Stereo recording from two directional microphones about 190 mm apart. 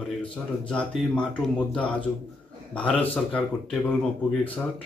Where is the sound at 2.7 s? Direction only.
5° left (ahead or behind).